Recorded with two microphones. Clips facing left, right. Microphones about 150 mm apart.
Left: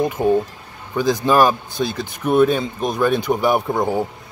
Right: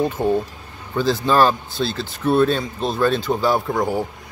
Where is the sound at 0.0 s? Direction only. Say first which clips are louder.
Left 2 dB; 10° left (ahead or behind).